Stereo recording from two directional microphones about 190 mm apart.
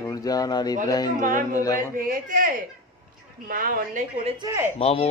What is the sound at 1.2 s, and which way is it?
A woman's voice, 45° right (ahead or behind).